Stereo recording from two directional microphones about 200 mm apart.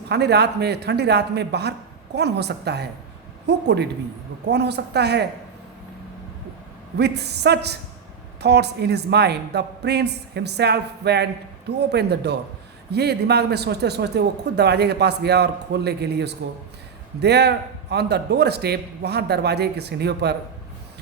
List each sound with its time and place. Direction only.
0.1 s speech: 55° right (ahead or behind)
6.9 s speech: 55° right (ahead or behind)